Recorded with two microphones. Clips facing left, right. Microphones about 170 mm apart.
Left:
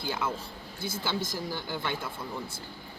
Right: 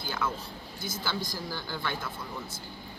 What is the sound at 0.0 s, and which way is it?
Speech, 25° left (ahead or behind).